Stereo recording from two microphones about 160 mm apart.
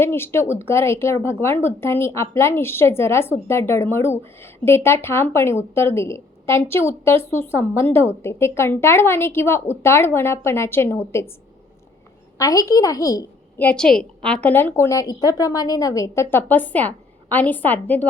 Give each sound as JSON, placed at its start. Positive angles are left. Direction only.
{"t": 0.0, "sound": "a woman's voice", "side_deg": 15}
{"t": 12.4, "sound": "a woman's voice", "side_deg": 20}
{"t": 13.6, "sound": "a woman's voice", "side_deg": 5}